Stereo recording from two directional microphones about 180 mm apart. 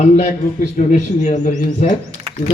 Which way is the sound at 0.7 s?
40° left (ahead or behind).